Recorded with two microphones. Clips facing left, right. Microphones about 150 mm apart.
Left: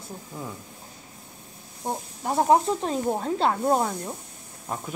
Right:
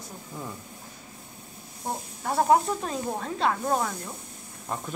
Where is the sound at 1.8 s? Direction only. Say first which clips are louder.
Left 2 dB; 20° left (ahead or behind).